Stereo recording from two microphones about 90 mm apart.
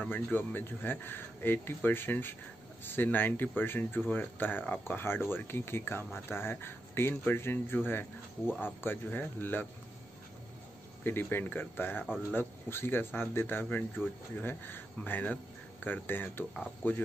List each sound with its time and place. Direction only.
0.0 s speech: 20° left (ahead or behind)
11.1 s speech: 25° left (ahead or behind)